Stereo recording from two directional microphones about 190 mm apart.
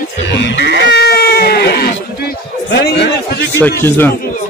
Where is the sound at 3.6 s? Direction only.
10° left (ahead or behind).